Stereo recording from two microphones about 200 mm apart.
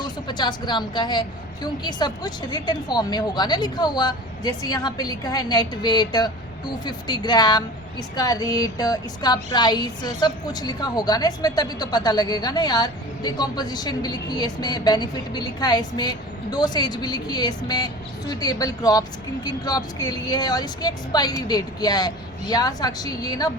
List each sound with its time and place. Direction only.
0.0 s a woman's voice: 20° left (ahead or behind)